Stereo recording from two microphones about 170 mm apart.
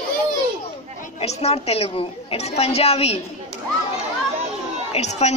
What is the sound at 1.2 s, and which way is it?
A woman's voice, 35° left (ahead or behind).